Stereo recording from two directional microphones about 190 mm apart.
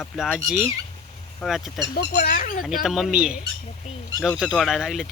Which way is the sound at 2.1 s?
50° left (ahead or behind).